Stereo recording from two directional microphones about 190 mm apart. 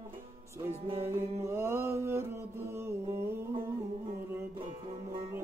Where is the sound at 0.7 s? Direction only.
30° right (ahead or behind).